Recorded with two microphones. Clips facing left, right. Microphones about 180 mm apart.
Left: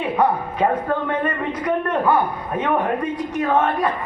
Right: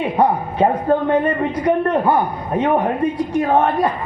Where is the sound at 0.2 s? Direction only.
30° right (ahead or behind).